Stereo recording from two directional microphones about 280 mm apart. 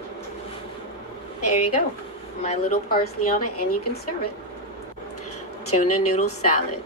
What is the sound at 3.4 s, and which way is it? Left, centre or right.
Speech, left.